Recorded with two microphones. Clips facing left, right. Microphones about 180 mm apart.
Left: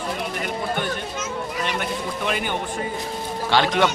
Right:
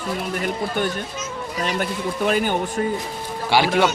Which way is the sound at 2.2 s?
40° right (ahead or behind).